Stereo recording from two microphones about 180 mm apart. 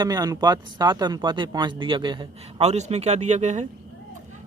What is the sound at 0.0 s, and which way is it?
Speech, 20° right (ahead or behind).